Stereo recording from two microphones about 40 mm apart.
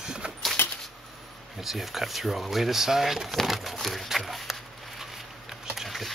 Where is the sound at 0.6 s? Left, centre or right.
Left.